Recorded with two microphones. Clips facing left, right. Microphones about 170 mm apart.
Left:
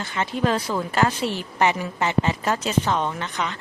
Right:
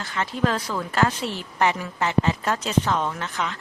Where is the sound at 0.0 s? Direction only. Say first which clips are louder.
Left 1 dB; 20° left (ahead or behind).